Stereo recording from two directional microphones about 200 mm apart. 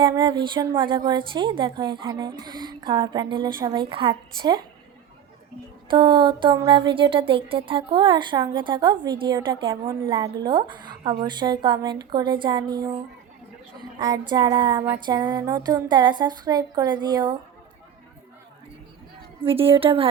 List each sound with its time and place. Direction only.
0.0 s a woman's voice: 20° right (ahead or behind)
5.9 s a woman's voice: 20° right (ahead or behind)
19.4 s a woman's voice: 25° right (ahead or behind)